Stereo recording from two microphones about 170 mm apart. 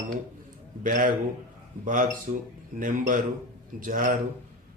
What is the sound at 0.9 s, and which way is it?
A man's voice, 55° right (ahead or behind).